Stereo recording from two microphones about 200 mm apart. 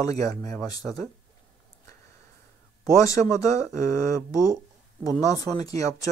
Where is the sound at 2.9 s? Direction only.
15° left (ahead or behind).